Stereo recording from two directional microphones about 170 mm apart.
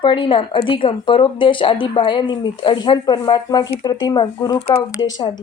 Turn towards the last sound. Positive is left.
turn(degrees=25)  # may be behind; listen again after turning